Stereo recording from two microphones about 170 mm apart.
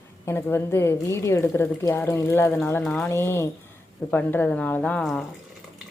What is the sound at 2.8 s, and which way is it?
Speech, 5° left (ahead or behind).